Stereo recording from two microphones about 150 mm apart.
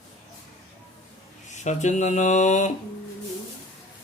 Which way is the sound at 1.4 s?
50° left (ahead or behind).